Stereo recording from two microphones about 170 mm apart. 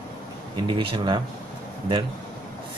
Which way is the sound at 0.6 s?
30° right (ahead or behind).